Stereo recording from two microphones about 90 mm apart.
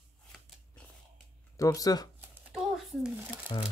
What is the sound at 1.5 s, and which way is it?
Speech, 40° left (ahead or behind).